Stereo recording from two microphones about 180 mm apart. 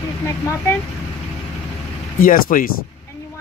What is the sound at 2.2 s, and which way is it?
Speech, 50° left (ahead or behind).